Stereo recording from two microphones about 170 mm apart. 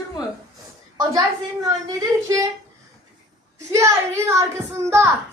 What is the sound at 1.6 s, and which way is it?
Speech, 20° right (ahead or behind).